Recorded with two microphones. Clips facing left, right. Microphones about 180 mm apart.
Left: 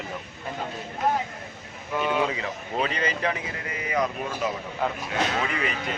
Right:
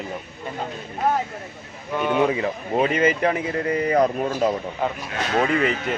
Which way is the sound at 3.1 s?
50° right (ahead or behind).